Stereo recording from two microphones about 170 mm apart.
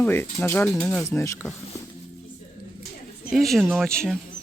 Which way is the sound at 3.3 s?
Centre (ahead or behind).